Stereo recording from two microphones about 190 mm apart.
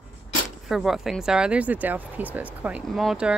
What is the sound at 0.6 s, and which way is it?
Speech, centre (ahead or behind).